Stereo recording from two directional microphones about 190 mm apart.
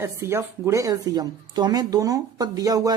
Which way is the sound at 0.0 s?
15° right (ahead or behind).